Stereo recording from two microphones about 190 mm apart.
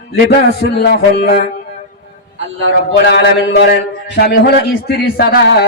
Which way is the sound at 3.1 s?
60° left (ahead or behind).